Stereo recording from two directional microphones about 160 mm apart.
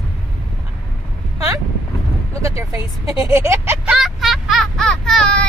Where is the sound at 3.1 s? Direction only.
15° right (ahead or behind).